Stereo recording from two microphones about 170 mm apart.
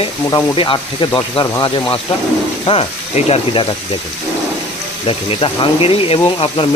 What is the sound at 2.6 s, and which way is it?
Speech, 35° left (ahead or behind).